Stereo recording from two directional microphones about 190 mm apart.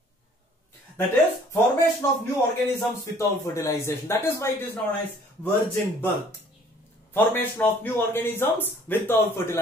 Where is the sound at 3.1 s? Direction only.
15° left (ahead or behind).